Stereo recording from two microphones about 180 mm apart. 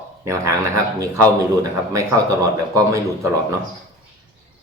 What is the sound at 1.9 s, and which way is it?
A woman's voice, 15° right (ahead or behind).